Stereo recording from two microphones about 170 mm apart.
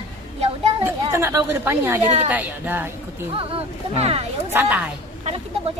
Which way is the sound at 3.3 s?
35° right (ahead or behind).